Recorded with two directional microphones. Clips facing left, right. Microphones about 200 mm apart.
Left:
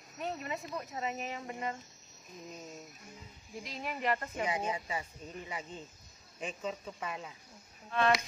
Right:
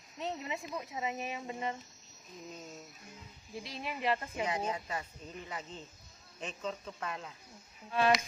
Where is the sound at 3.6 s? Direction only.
15° left (ahead or behind).